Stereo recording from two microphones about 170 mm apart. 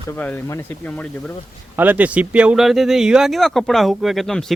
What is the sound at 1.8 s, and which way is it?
Speech, 10° right (ahead or behind).